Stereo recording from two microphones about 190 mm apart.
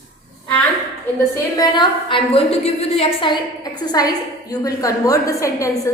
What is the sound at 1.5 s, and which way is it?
A woman's voice, 25° left (ahead or behind).